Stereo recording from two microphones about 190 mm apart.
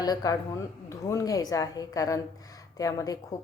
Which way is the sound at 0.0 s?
20° left (ahead or behind).